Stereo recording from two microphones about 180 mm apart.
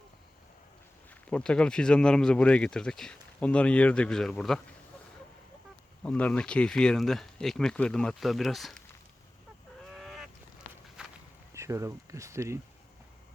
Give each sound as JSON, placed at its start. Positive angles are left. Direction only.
{"t": 1.3, "sound": "speech", "side_deg": 5}
{"t": 6.0, "sound": "speech", "side_deg": 5}
{"t": 9.9, "sound": "goose", "side_deg": 0}
{"t": 11.0, "sound": "walk", "side_deg": -5}
{"t": 11.5, "sound": "speech", "side_deg": -15}